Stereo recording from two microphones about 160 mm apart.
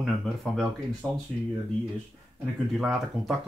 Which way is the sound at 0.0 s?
Centre (ahead or behind).